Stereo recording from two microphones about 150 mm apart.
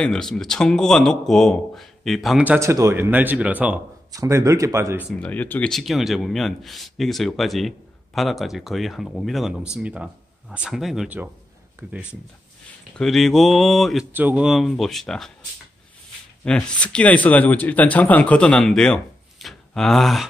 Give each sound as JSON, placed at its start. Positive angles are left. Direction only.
{"t": 0.0, "sound": "speech", "side_deg": 5}
{"t": 2.4, "sound": "speech", "side_deg": -15}
{"t": 4.1, "sound": "speech", "side_deg": -20}
{"t": 5.2, "sound": "speech", "side_deg": 10}
{"t": 12.9, "sound": "speech", "side_deg": 0}
{"t": 14.1, "sound": "speech", "side_deg": -10}
{"t": 16.4, "sound": "speech", "side_deg": 5}